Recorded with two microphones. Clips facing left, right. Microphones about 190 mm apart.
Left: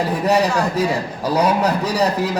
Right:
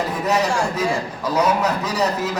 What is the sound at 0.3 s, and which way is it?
A man's voice, 30° left (ahead or behind).